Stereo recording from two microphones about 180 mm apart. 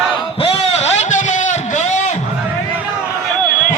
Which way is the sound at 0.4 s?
35° left (ahead or behind).